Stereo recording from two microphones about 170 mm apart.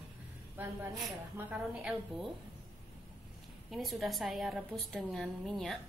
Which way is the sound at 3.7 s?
Centre (ahead or behind).